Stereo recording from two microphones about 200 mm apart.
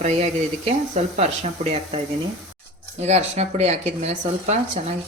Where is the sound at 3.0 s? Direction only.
35° right (ahead or behind).